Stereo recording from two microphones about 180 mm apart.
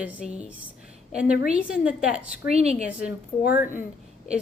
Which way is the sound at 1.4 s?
5° right (ahead or behind).